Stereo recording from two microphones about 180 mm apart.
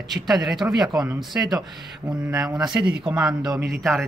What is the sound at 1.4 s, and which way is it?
Speech, 15° right (ahead or behind).